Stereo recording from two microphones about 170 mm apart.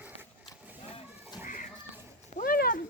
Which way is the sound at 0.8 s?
35° left (ahead or behind).